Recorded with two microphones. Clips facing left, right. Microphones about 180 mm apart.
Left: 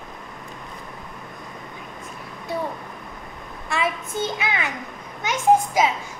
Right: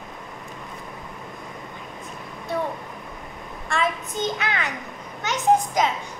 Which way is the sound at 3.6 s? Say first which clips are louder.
Even; 5° left (ahead or behind).